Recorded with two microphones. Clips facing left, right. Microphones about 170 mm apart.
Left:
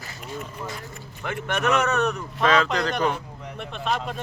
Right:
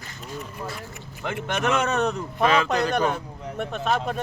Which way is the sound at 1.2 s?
25° right (ahead or behind).